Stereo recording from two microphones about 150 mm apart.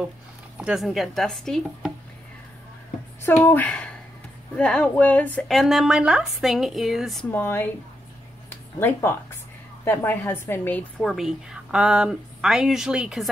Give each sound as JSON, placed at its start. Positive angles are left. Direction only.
{"t": 0.6, "sound": "a woman's voice", "side_deg": 0}
{"t": 3.2, "sound": "speech", "side_deg": 15}
{"t": 5.6, "sound": "a woman's voice", "side_deg": 0}
{"t": 7.2, "sound": "a woman's voice", "side_deg": 15}